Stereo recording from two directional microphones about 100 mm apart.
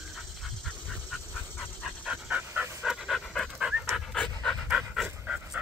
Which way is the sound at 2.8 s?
Centre (ahead or behind).